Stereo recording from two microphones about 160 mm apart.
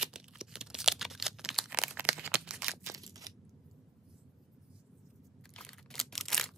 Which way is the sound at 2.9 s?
20° right (ahead or behind).